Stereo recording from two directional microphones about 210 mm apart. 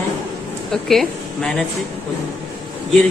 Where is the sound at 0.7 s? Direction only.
Centre (ahead or behind).